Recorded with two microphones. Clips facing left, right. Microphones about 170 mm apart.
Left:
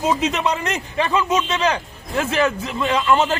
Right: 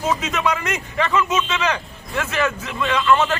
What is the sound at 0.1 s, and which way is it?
A man's voice, 30° left (ahead or behind).